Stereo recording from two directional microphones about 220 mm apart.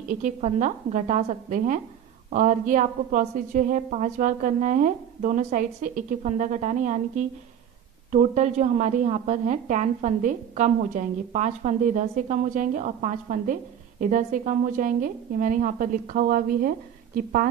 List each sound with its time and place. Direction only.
0.1 s a woman's voice: 35° right (ahead or behind)